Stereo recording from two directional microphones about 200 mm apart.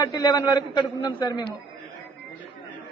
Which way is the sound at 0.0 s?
20° left (ahead or behind).